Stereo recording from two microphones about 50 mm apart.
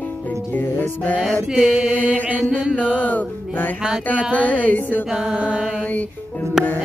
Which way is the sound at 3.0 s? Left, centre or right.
Left.